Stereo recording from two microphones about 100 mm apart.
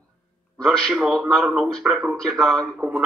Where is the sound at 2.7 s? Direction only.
10° right (ahead or behind).